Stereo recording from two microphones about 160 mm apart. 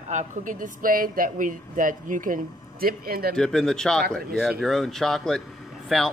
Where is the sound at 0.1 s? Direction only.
50° right (ahead or behind); by 3.3 s 70° right (ahead or behind).